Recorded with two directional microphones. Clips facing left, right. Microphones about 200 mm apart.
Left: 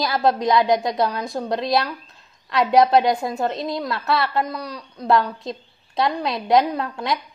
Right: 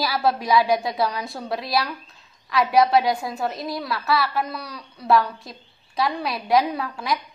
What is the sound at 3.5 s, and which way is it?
A woman's voice, 20° left (ahead or behind).